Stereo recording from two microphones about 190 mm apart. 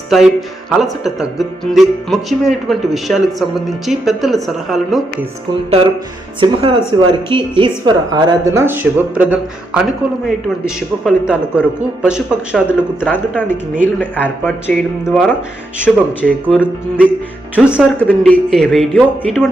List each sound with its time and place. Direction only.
0.1 s speech: centre (ahead or behind)
6.4 s a woman's voice: 25° right (ahead or behind); by 12.6 s 5° right (ahead or behind)
13.1 s speech: 10° left (ahead or behind)
15.0 s speech: centre (ahead or behind)
17.7 s speech: 5° left (ahead or behind)